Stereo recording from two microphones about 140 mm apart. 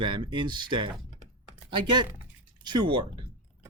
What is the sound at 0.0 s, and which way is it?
Speech, 35° right (ahead or behind).